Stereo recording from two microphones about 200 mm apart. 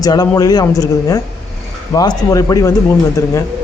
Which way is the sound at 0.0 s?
20° left (ahead or behind).